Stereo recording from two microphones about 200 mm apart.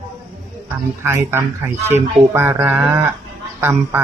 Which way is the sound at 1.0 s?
15° right (ahead or behind).